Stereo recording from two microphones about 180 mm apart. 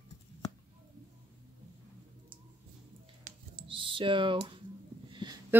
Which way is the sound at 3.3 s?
50° right (ahead or behind).